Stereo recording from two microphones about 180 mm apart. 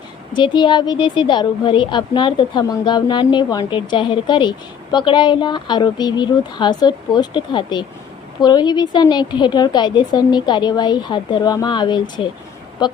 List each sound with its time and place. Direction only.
0.3 s a woman's voice: 25° left (ahead or behind)